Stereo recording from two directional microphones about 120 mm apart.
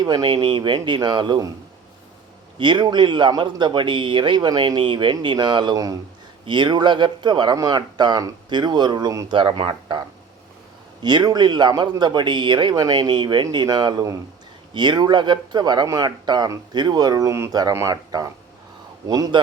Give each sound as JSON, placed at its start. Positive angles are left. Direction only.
{"t": 0.0, "sound": "speech", "side_deg": -40}
{"t": 2.6, "sound": "speech", "side_deg": -40}
{"t": 11.0, "sound": "speech", "side_deg": -35}